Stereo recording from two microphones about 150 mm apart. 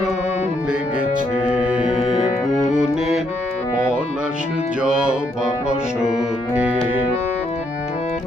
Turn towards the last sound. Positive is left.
turn(degrees=-5)  # may be behind; listen again after turning